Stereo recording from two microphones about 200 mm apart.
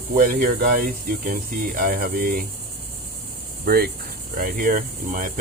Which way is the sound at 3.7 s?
50° right (ahead or behind).